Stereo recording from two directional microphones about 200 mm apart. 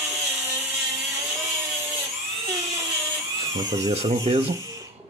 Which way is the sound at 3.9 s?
30° right (ahead or behind).